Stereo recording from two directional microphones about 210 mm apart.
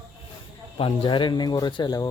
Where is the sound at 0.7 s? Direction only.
25° left (ahead or behind).